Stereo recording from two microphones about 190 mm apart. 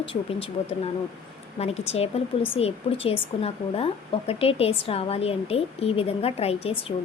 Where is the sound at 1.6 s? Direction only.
35° left (ahead or behind).